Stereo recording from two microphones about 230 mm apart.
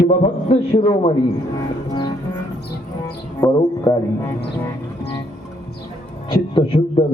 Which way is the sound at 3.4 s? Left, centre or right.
Centre.